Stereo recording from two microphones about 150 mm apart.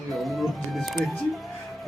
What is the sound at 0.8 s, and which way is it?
Speech, centre (ahead or behind).